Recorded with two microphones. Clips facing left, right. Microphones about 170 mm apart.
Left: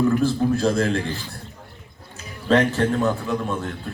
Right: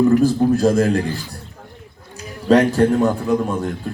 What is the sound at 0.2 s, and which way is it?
Speech, 40° right (ahead or behind).